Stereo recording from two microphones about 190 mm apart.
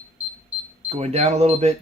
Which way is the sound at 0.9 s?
35° right (ahead or behind).